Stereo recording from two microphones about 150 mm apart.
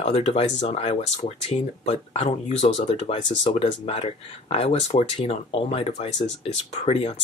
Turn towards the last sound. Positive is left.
turn(degrees=40)  # may be behind; listen again after turning